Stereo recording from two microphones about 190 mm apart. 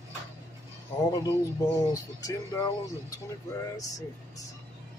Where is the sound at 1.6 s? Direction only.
20° left (ahead or behind).